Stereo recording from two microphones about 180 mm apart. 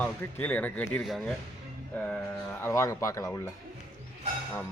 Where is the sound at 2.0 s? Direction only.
10° left (ahead or behind).